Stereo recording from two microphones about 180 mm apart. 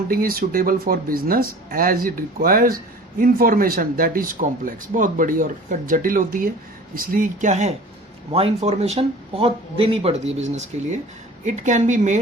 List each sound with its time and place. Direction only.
0.1 s speech: 55° right (ahead or behind)